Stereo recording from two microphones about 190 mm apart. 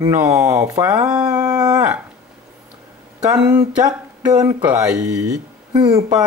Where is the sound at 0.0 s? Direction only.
15° right (ahead or behind).